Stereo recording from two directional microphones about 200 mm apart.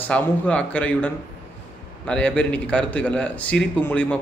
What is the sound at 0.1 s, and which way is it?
A man's voice, 5° left (ahead or behind).